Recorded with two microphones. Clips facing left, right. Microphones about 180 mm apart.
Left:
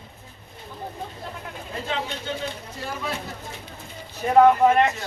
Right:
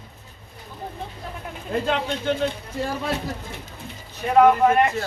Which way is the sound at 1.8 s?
65° right (ahead or behind).